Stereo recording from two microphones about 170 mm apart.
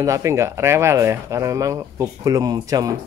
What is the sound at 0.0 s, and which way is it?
Speech, 20° right (ahead or behind).